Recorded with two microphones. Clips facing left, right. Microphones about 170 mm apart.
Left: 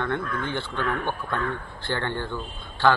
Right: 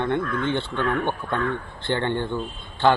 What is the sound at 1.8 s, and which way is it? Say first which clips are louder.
Speech: right 4 dB; 20° right (ahead or behind).